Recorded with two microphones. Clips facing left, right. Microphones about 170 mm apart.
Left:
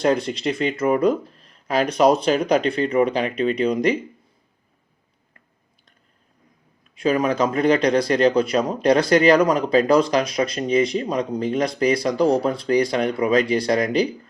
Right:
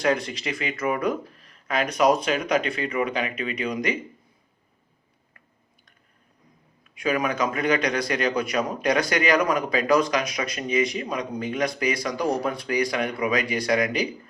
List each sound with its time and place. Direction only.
0.4 s speech: 30° left (ahead or behind)
6.9 s speech: 30° left (ahead or behind)